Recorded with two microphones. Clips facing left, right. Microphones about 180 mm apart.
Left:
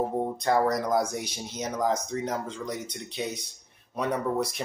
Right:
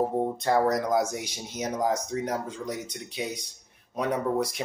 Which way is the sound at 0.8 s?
20° right (ahead or behind).